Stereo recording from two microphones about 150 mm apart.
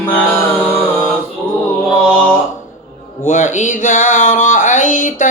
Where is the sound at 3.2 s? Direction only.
55° left (ahead or behind).